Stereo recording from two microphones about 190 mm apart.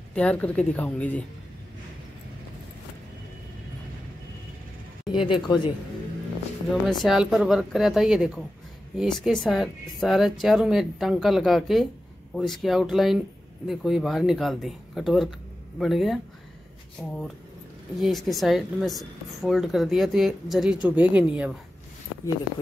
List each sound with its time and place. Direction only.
0.1 s speech: 5° left (ahead or behind)
5.1 s a woman's voice: 25° left (ahead or behind)
6.7 s speech: centre (ahead or behind)